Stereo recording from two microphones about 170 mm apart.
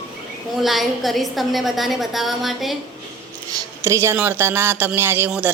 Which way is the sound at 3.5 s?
20° right (ahead or behind).